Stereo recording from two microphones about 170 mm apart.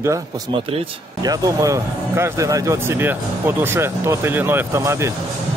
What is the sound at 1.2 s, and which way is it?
Speech, 20° right (ahead or behind).